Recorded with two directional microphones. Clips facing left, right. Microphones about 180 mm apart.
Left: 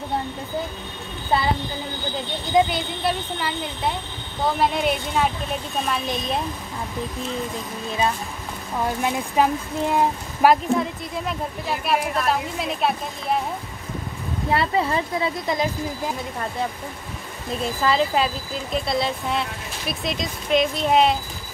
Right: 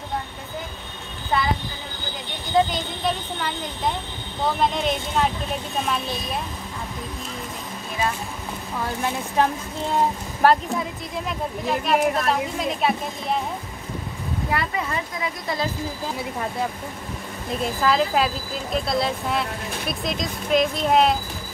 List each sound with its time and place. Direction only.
1.3 s speech: 30° left (ahead or behind)
2.5 s speech: 10° left (ahead or behind)
9.0 s speech: 15° left (ahead or behind)
10.7 s speech: centre (ahead or behind)
14.5 s speech: 30° left (ahead or behind)
17.8 s speech: centre (ahead or behind)